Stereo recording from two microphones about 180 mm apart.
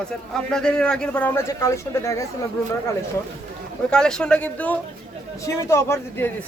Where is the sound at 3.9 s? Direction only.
5° left (ahead or behind).